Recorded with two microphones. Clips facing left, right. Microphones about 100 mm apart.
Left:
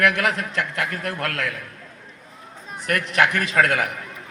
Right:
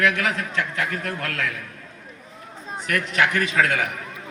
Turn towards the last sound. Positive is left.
turn(degrees=50)  # may be behind; listen again after turning